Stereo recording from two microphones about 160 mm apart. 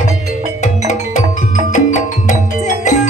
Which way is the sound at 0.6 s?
50° left (ahead or behind).